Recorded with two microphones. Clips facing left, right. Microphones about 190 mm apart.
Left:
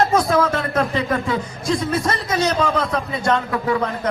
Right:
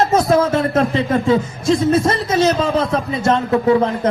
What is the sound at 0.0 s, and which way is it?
Speech, 25° right (ahead or behind).